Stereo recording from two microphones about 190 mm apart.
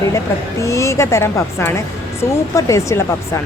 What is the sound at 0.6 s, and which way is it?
A woman's voice, 15° left (ahead or behind).